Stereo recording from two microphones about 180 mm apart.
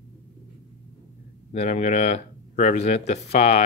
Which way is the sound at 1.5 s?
40° left (ahead or behind).